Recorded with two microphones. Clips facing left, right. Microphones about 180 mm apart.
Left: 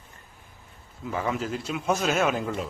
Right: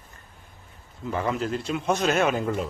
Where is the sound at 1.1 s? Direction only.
Centre (ahead or behind).